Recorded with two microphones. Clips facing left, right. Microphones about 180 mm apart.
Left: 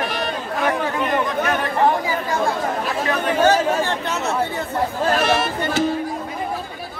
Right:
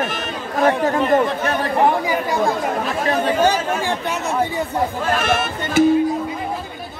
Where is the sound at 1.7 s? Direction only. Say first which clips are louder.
Right 2 dB; 15° right (ahead or behind).